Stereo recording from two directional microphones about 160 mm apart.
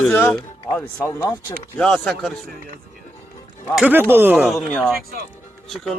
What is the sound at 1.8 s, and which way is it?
Speech, 5° left (ahead or behind).